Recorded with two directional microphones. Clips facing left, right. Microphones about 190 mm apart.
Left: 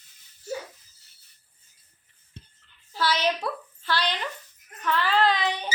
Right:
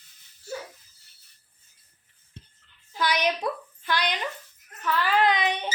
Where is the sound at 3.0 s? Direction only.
15° right (ahead or behind).